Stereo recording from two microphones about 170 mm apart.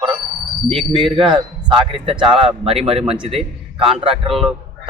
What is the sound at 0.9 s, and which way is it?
A man's voice, 30° right (ahead or behind).